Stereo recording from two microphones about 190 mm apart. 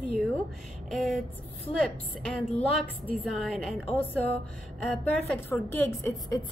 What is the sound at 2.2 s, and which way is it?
A woman's voice, 5° left (ahead or behind).